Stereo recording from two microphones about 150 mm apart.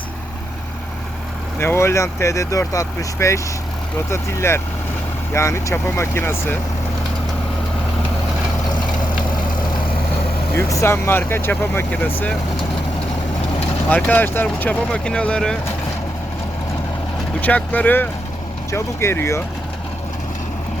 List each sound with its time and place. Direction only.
1.5 s speech: 15° left (ahead or behind)
10.5 s speech: 20° left (ahead or behind)
13.9 s speech: 10° left (ahead or behind)
17.4 s speech: 10° left (ahead or behind)